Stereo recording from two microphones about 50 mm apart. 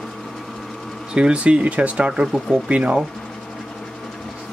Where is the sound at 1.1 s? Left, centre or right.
Right.